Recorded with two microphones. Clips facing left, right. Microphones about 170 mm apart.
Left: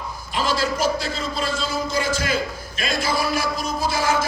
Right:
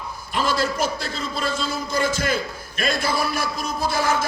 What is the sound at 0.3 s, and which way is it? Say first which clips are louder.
A man's voice: even; 55° right (ahead or behind).